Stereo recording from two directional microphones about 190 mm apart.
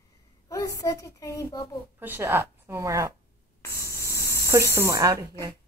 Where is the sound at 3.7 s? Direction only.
55° left (ahead or behind).